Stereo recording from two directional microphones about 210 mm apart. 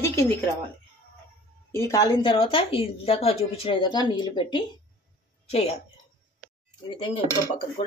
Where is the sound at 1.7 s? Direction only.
15° left (ahead or behind); by 5.7 s 30° left (ahead or behind).